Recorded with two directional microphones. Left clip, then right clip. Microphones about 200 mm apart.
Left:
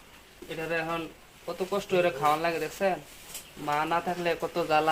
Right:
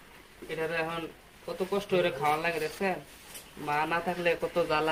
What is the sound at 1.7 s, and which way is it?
A man's voice, 30° left (ahead or behind).